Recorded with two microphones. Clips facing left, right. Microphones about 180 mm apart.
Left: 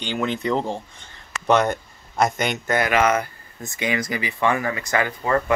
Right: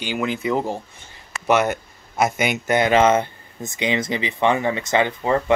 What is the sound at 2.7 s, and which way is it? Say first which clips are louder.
Speech: right 4 dB; 25° right (ahead or behind).